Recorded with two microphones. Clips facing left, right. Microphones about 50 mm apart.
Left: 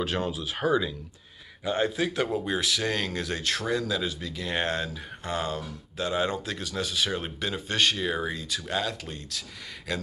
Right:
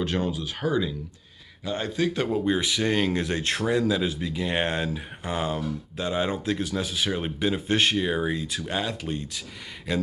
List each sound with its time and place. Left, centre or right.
0.0 s a man's voice: centre
2.0 s speech: centre
2.4 s speech: centre
6.3 s speech: centre